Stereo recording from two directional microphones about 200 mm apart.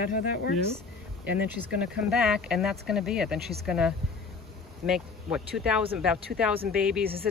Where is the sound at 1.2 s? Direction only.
5° right (ahead or behind).